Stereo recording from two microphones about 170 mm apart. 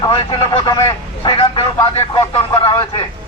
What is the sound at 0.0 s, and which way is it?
A man's voice, 30° left (ahead or behind).